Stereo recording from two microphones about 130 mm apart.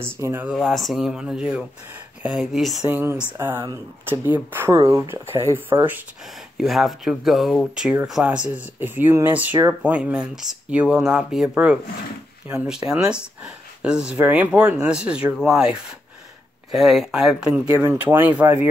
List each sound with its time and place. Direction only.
0.0 s speech: 20° right (ahead or behind)
0.6 s speech: centre (ahead or behind)
2.9 s speech: 15° right (ahead or behind)
4.7 s speech: 25° right (ahead or behind)
6.6 s speech: centre (ahead or behind)
17.6 s speech: 20° right (ahead or behind)